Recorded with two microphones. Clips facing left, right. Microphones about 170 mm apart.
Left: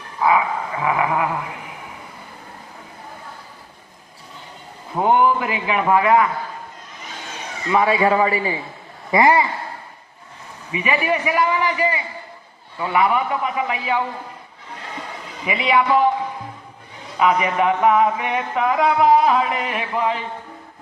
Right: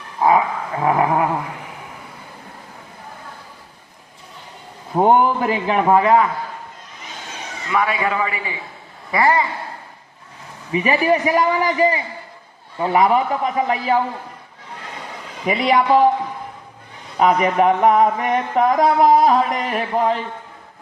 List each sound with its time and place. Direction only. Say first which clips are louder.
0.2 s a man's voice: right 2 dB; 40° right (ahead or behind)
4.9 s a man's voice: right 2 dB; 40° right (ahead or behind)
7.7 s a man's voice: left 4 dB; 25° left (ahead or behind)
9.1 s speech: left 2 dB; 15° left (ahead or behind)
10.7 s a man's voice: right 4 dB; 35° right (ahead or behind)
15.4 s a man's voice: right 2 dB; 40° right (ahead or behind)
17.2 s a man's voice: right 3 dB; 40° right (ahead or behind)